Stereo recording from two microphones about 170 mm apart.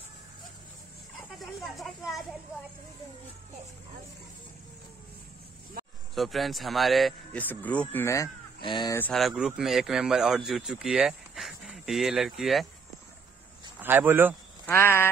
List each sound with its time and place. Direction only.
1.4 s speech: centre (ahead or behind)
6.1 s speech: centre (ahead or behind); by 8.3 s 15° left (ahead or behind)
8.5 s speech: 25° left (ahead or behind)
9.1 s speech: centre (ahead or behind)
13.7 s speech: 10° right (ahead or behind)
14.7 s speech: 15° left (ahead or behind)